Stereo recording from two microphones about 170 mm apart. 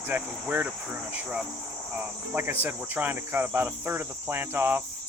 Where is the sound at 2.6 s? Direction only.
10° right (ahead or behind).